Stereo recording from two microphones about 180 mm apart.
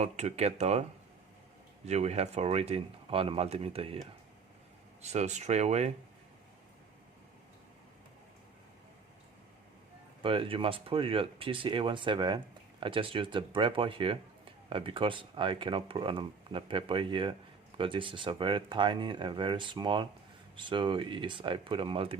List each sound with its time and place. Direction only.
0.0 s speech: 35° right (ahead or behind)
5.0 s speech: 40° right (ahead or behind)
10.2 s speech: 30° right (ahead or behind)